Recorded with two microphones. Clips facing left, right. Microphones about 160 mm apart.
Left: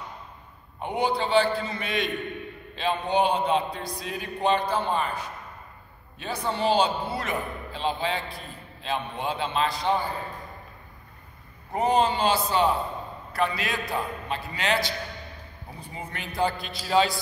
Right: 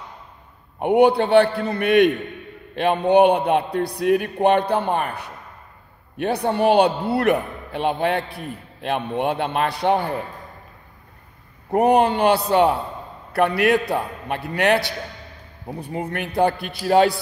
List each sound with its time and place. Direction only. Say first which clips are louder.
0.7 s a man's voice: right 11 dB; 60° right (ahead or behind)
11.7 s a man's voice: right 6 dB; 65° right (ahead or behind)